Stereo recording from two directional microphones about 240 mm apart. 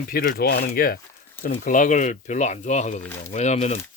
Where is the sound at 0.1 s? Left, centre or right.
Left.